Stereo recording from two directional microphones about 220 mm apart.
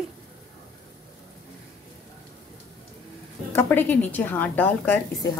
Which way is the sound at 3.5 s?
10° left (ahead or behind).